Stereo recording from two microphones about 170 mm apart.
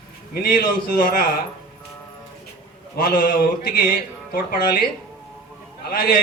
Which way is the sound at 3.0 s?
60° left (ahead or behind).